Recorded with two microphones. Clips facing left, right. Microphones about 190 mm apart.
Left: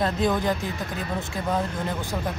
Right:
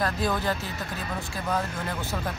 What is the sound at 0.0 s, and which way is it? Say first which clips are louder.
Speech: left 4 dB; 20° left (ahead or behind).